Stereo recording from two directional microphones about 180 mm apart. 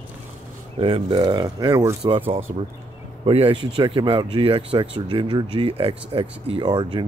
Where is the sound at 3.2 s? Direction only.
30° right (ahead or behind).